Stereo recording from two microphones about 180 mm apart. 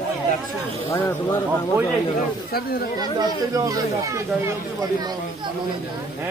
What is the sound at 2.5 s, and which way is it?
Speech, 60° left (ahead or behind).